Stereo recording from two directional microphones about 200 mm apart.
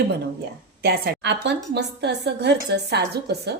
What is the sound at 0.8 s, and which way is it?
A woman's voice, 50° right (ahead or behind).